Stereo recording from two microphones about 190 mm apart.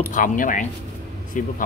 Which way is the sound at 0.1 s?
45° left (ahead or behind).